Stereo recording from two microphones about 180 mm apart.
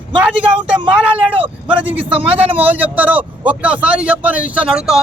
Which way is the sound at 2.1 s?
30° right (ahead or behind).